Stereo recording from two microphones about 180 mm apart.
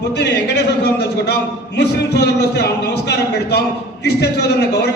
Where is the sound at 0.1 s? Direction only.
70° left (ahead or behind).